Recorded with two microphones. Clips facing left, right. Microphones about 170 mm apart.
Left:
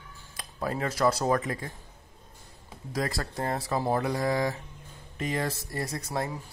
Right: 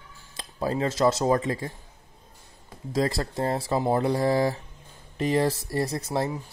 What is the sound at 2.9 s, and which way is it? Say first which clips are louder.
Speech: right 6 dB; 25° right (ahead or behind).